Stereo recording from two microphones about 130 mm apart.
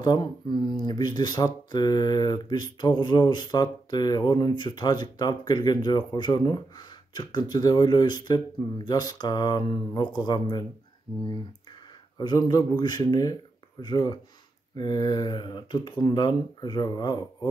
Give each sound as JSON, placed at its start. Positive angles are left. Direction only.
{"t": 0.0, "sound": "speech", "side_deg": 35}
{"t": 12.2, "sound": "speech", "side_deg": 30}